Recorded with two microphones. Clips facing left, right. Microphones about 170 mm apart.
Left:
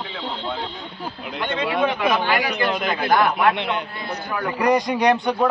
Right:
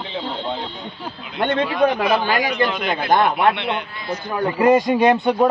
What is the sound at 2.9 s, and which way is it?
A man's voice, 25° right (ahead or behind).